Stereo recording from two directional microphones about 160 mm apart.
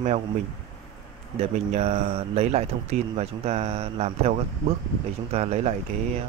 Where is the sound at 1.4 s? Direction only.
40° right (ahead or behind).